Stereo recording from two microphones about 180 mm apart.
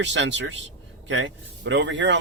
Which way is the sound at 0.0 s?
85° right.